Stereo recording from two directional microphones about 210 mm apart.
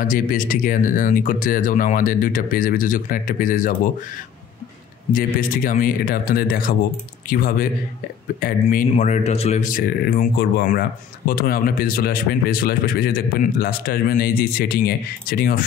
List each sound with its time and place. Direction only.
0.0 s speech: 40° left (ahead or behind)
5.1 s speech: 40° left (ahead or behind)